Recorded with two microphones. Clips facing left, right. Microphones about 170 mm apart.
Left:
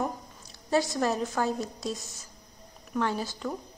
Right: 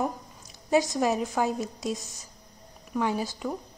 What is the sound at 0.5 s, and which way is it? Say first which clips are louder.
A woman's voice: right 3 dB; 15° right (ahead or behind).